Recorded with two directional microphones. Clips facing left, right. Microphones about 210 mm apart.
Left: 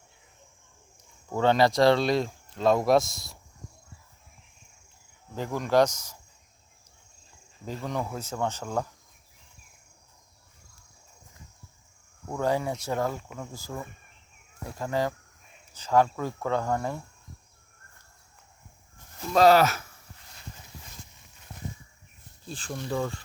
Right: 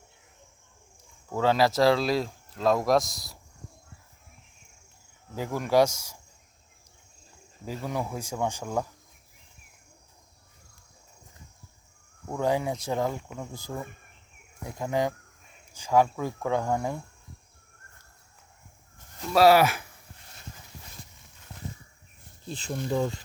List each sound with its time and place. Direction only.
1.3 s speech: centre (ahead or behind)
5.3 s speech: 10° right (ahead or behind)
7.6 s speech: 10° right (ahead or behind)
12.3 s speech: 15° right (ahead or behind)
14.7 s speech: 15° right (ahead or behind)
19.2 s speech: 5° right (ahead or behind)
22.9 s speech: 20° right (ahead or behind)